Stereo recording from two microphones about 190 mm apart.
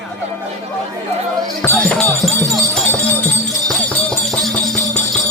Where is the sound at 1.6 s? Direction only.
5° left (ahead or behind).